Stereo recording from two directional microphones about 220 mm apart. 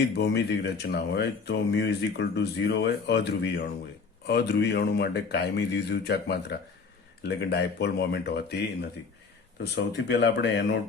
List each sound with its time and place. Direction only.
0.2 s speech: 50° left (ahead or behind)